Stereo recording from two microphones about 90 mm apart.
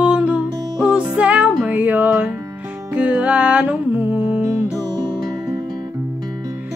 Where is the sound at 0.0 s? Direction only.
10° right (ahead or behind).